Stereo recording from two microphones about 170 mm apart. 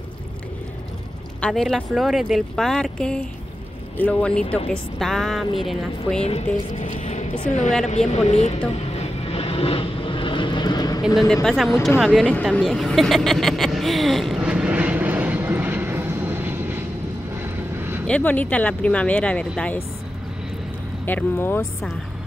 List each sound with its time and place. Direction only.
1.4 s speech: centre (ahead or behind)
6.2 s speech: 40° left (ahead or behind)
7.8 s vehicle: 40° left (ahead or behind); by 11.0 s 25° left (ahead or behind)
11.4 s speech: centre (ahead or behind)
12.4 s a sound: centre (ahead or behind)
17.4 s vehicle: 15° right (ahead or behind)
18.0 s speech: 10° left (ahead or behind)
21.0 s speech: 10° left (ahead or behind)